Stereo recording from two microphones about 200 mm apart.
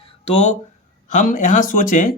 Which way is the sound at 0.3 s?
35° left (ahead or behind).